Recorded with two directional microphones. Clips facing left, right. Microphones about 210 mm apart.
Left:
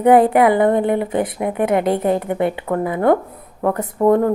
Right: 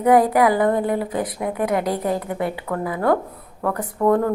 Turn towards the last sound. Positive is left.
turn(degrees=25)  # may be behind; listen again after turning